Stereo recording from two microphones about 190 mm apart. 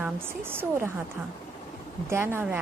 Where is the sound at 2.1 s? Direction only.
10° right (ahead or behind).